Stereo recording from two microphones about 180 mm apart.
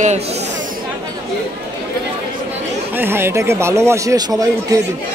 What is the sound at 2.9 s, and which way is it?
A man's voice, 15° right (ahead or behind).